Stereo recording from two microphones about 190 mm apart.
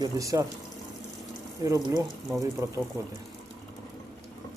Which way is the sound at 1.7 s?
20° right (ahead or behind).